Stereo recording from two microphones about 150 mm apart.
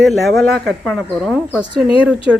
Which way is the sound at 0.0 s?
Centre (ahead or behind).